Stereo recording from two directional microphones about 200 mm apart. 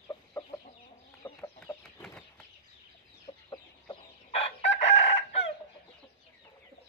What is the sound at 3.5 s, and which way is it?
Chicken, 25° left (ahead or behind).